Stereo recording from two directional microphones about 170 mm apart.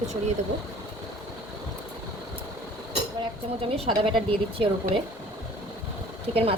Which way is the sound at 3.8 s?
30° right (ahead or behind).